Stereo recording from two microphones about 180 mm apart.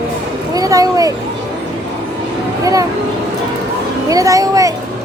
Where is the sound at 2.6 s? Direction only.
20° right (ahead or behind).